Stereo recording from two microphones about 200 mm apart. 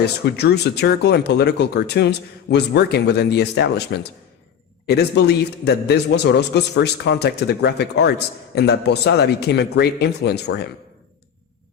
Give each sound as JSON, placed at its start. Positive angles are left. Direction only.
{"t": 0.0, "sound": "speech", "side_deg": 55}